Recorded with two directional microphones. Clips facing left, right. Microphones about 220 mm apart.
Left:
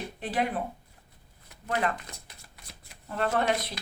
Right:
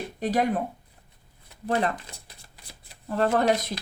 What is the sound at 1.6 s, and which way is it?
Speech, 30° right (ahead or behind).